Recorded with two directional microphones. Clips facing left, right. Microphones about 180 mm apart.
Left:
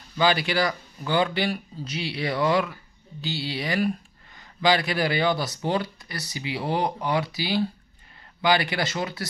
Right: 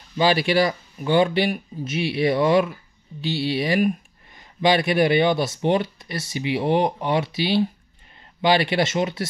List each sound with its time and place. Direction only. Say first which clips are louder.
0.2 s speech: right 4 dB; 25° right (ahead or behind)